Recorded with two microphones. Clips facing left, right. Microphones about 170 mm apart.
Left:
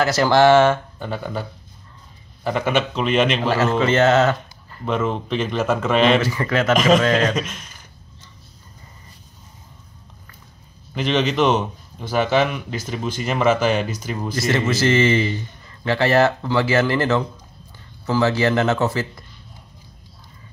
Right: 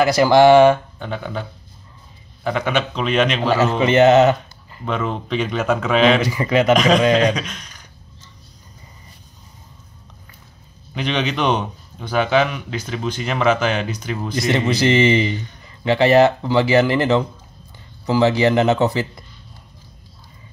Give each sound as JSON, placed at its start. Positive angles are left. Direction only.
{"t": 0.0, "sound": "a man's voice", "side_deg": -15}
{"t": 0.9, "sound": "a man's voice", "side_deg": 5}
{"t": 3.5, "sound": "speech", "side_deg": -15}
{"t": 4.8, "sound": "a man's voice", "side_deg": 0}
{"t": 6.2, "sound": "a man's voice", "side_deg": -15}
{"t": 7.3, "sound": "a man's voice", "side_deg": 5}
{"t": 11.0, "sound": "a man's voice", "side_deg": 0}
{"t": 14.3, "sound": "a man's voice", "side_deg": -15}